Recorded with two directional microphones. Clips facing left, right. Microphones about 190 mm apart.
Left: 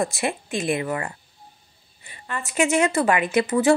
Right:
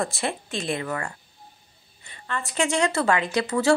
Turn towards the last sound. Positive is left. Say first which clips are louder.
# left 3 dB
turn(degrees=20)  # may be behind; listen again after turning